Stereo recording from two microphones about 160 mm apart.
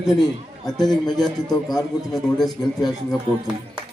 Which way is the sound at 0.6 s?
Centre (ahead or behind).